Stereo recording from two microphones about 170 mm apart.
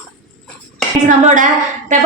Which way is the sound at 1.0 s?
45° right (ahead or behind).